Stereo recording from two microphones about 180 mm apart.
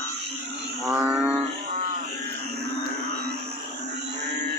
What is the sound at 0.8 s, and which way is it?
Mantra, 10° right (ahead or behind).